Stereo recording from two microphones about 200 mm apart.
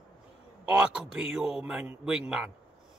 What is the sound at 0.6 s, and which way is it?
A man's voice, 5° right (ahead or behind).